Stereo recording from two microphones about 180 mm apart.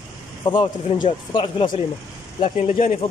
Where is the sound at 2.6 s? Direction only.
45° left (ahead or behind).